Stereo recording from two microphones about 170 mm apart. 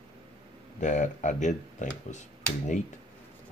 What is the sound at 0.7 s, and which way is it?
Speech, 45° left (ahead or behind).